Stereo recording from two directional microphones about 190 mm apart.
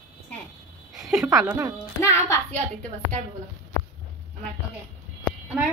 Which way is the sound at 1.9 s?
15° left (ahead or behind).